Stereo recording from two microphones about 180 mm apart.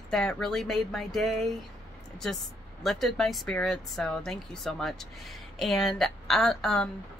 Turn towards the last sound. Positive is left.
turn(degrees=0)  # may be behind; listen again after turning